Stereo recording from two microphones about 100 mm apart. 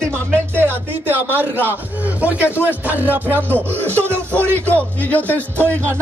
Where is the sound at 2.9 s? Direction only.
15° right (ahead or behind).